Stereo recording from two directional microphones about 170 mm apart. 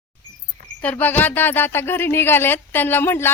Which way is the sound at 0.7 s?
10° left (ahead or behind).